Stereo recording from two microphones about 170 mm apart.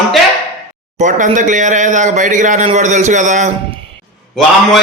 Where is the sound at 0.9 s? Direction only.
45° right (ahead or behind).